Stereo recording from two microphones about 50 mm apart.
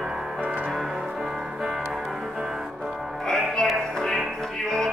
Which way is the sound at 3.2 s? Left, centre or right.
Centre.